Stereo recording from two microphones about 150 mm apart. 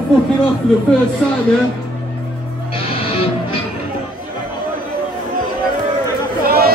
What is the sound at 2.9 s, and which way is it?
Music, 35° left (ahead or behind).